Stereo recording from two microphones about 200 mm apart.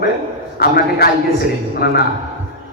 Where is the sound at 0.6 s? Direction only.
50° left (ahead or behind).